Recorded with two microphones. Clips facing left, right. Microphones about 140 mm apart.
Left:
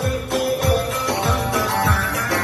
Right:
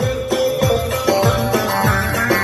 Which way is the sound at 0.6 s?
80° right.